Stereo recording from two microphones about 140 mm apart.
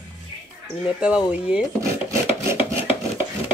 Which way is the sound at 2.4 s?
20° right (ahead or behind).